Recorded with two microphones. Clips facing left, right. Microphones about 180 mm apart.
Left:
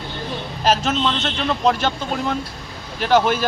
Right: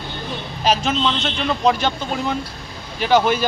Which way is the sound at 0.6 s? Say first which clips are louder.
Even; 5° left (ahead or behind).